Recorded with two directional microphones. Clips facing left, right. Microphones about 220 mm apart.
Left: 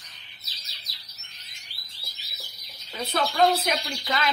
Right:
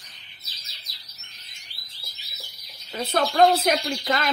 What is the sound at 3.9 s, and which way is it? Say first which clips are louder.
Speech: right 4 dB; 45° right (ahead or behind).